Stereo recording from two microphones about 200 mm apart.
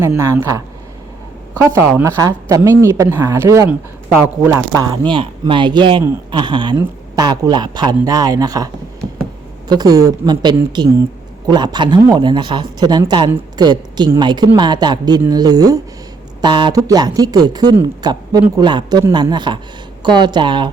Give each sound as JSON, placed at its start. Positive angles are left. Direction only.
{"t": 0.0, "sound": "a woman's voice", "side_deg": -15}
{"t": 4.8, "sound": "a woman's voice", "side_deg": -20}